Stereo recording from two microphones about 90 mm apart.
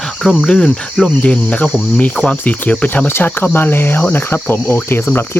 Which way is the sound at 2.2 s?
20° left (ahead or behind).